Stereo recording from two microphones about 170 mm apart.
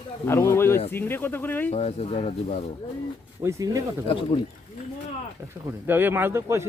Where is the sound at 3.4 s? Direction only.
20° right (ahead or behind).